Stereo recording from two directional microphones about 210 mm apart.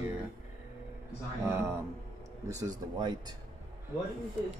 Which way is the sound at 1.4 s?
10° right (ahead or behind).